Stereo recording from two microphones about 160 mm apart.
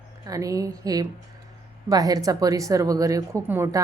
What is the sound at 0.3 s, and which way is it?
Speech, 20° right (ahead or behind).